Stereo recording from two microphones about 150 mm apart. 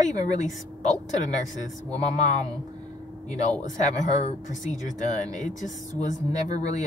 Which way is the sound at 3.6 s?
55° left (ahead or behind).